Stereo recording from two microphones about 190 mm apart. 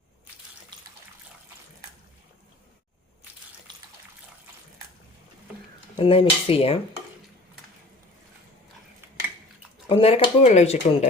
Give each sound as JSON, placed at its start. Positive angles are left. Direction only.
{"t": 0.7, "sound": "water", "side_deg": -25}
{"t": 6.0, "sound": "cutlery", "side_deg": 30}
{"t": 9.9, "sound": "speech", "side_deg": 30}